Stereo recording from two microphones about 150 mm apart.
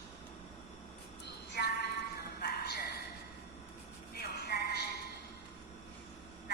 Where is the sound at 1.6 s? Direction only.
85° left.